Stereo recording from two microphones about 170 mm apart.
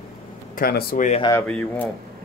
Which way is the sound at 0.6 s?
60° left (ahead or behind).